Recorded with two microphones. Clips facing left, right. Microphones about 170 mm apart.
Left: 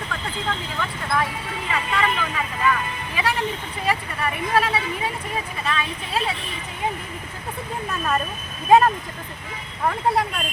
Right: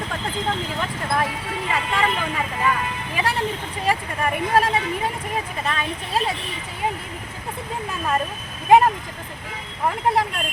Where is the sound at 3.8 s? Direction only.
40° right (ahead or behind).